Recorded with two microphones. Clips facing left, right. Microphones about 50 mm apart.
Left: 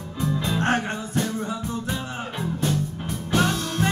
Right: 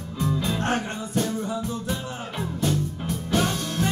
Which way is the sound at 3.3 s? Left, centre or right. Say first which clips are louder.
Left 2 dB; left.